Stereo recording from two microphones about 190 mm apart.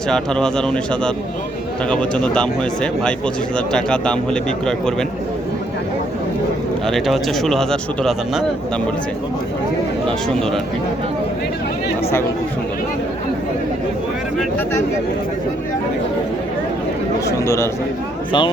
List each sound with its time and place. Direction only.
0.1 s speech: 5° left (ahead or behind)
6.8 s speech: centre (ahead or behind)
10.1 s speech: 5° left (ahead or behind)
17.2 s speech: 15° left (ahead or behind)
18.3 s speech: 25° left (ahead or behind)